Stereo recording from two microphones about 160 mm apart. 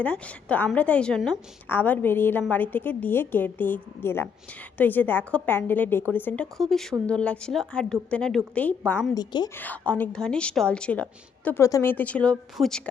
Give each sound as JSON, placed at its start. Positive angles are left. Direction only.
{"t": 0.0, "sound": "a woman's voice", "side_deg": 10}
{"t": 9.1, "sound": "a woman's voice", "side_deg": 25}
{"t": 9.6, "sound": "a woman's voice", "side_deg": 10}